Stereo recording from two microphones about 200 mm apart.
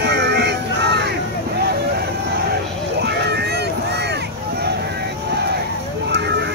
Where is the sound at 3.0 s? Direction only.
55° right (ahead or behind).